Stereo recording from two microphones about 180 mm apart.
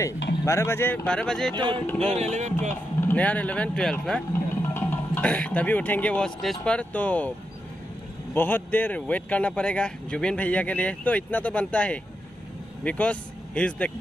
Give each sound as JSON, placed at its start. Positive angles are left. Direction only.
{"t": 0.5, "sound": "speech", "side_deg": 15}
{"t": 1.5, "sound": "speech", "side_deg": -25}
{"t": 2.0, "sound": "speech", "side_deg": -40}
{"t": 3.0, "sound": "speech", "side_deg": 10}
{"t": 8.4, "sound": "speech", "side_deg": 10}